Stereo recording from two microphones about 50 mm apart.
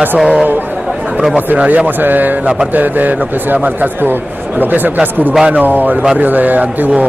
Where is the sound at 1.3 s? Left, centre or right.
Right.